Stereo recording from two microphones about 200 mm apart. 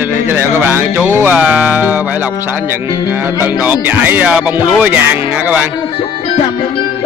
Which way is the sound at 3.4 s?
10° right (ahead or behind).